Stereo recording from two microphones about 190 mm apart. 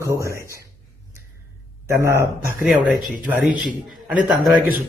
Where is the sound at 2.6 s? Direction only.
5° right (ahead or behind).